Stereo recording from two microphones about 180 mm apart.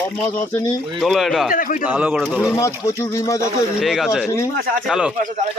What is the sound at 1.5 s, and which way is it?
Speech, 50° left (ahead or behind).